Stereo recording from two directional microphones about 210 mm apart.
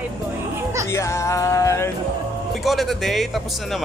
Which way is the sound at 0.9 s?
15° left (ahead or behind).